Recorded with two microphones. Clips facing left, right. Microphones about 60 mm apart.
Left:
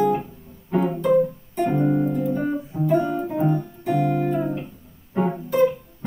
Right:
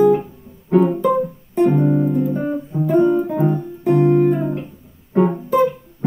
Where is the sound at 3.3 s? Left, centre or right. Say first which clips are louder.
Right 3 dB; centre.